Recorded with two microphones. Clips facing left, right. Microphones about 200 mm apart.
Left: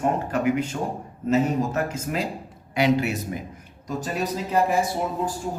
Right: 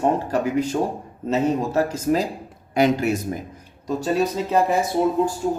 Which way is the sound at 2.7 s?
45° right (ahead or behind).